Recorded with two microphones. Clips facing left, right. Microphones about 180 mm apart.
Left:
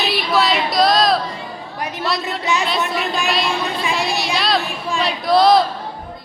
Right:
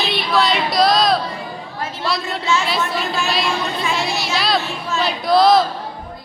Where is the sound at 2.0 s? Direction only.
Centre (ahead or behind).